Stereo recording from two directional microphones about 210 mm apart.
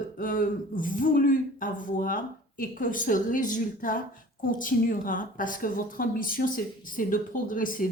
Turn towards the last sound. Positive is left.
turn(degrees=40)  # may be behind; listen again after turning